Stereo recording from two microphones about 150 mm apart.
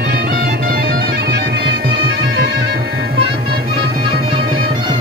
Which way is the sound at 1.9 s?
90° right.